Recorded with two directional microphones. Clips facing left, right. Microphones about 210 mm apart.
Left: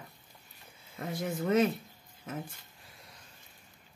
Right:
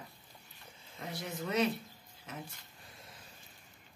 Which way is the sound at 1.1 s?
50° left (ahead or behind).